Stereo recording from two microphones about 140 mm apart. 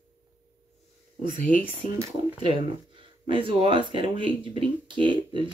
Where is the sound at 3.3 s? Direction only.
35° right (ahead or behind).